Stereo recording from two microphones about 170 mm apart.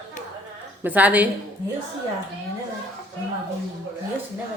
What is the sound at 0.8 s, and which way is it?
Speech, 10° right (ahead or behind).